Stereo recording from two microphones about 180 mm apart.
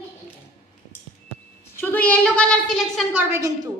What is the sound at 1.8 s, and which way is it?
A woman's voice, 10° left (ahead or behind).